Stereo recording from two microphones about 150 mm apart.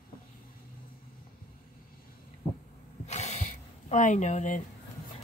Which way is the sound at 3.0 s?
50° left (ahead or behind).